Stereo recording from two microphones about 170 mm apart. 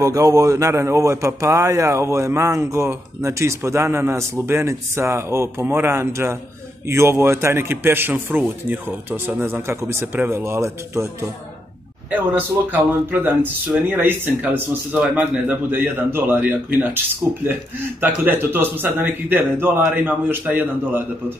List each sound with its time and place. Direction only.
0.0 s speech: 20° right (ahead or behind)